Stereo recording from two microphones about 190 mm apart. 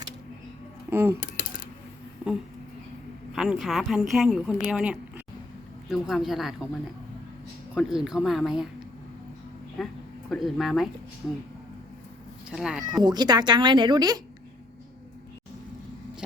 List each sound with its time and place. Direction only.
0.9 s speech: 10° right (ahead or behind)
1.2 s a sound: 45° left (ahead or behind)
3.3 s speech: centre (ahead or behind)
7.8 s speech: centre (ahead or behind)
9.8 s speech: centre (ahead or behind)
12.5 s speech: 5° right (ahead or behind)
13.0 s speech: 20° right (ahead or behind)